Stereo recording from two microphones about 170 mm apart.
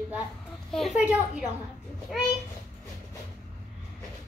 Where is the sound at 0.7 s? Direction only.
Centre (ahead or behind).